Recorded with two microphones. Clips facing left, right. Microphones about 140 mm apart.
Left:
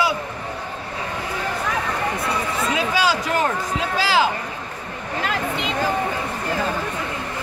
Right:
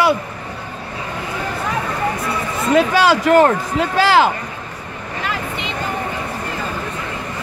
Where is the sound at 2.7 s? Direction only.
60° right (ahead or behind).